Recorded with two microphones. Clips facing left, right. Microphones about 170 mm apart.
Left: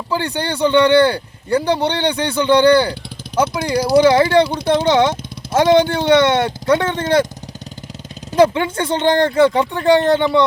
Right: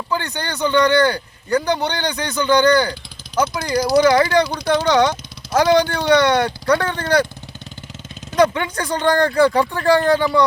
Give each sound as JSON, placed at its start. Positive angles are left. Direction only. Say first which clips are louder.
{"t": 0.1, "sound": "speech", "louder": "left 5 dB", "side_deg": 30}
{"t": 8.3, "sound": "speech", "louder": "left 3 dB", "side_deg": 25}